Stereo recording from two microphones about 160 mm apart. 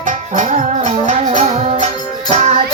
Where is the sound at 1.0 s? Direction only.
45° right (ahead or behind).